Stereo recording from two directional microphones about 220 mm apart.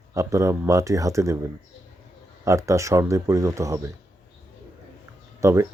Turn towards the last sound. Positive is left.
turn(degrees=-15)  # may be behind; listen again after turning